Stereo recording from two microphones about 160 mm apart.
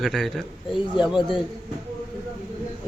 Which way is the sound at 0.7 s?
30° left (ahead or behind).